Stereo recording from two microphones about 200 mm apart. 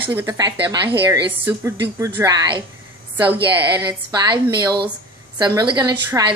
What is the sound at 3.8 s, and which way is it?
A woman's voice, 20° right (ahead or behind).